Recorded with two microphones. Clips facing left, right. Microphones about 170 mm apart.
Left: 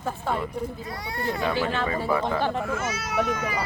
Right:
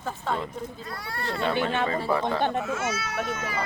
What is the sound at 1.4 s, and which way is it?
Speech, 25° right (ahead or behind).